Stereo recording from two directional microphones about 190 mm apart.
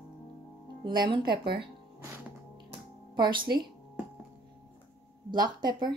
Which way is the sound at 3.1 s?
25° right (ahead or behind).